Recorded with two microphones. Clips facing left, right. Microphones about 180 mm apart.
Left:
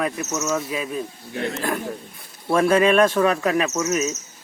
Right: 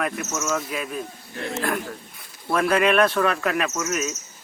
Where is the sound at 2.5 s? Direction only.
25° left (ahead or behind).